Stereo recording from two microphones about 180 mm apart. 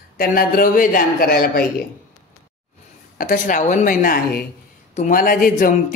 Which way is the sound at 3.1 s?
45° left (ahead or behind).